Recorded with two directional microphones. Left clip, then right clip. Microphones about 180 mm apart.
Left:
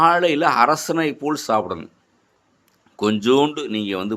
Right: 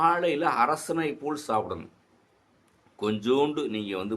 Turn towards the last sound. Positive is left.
turn(degrees=40)  # may be behind; listen again after turning